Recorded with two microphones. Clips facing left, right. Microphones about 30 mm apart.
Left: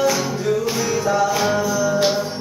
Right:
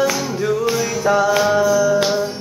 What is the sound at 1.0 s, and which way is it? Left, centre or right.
Music, right.